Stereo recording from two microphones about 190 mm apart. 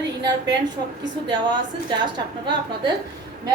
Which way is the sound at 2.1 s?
20° right (ahead or behind).